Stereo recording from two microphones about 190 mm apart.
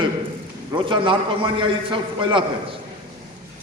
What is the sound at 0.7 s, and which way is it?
A man's voice, 25° right (ahead or behind).